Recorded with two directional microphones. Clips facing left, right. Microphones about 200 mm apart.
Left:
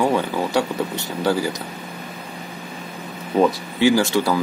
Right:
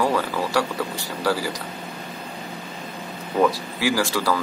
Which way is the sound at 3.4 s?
20° left (ahead or behind).